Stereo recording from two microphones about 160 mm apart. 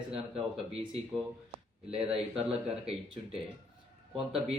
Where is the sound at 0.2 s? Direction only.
Centre (ahead or behind).